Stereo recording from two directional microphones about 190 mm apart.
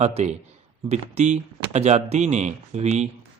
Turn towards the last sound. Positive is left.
turn(degrees=-35)  # may be behind; listen again after turning